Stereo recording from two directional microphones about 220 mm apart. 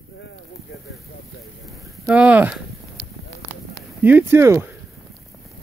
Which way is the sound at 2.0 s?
5° right (ahead or behind).